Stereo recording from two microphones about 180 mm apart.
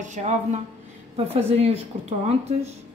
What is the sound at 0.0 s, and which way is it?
A woman's voice, 40° right (ahead or behind).